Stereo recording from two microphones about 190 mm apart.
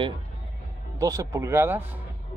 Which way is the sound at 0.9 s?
15° right (ahead or behind).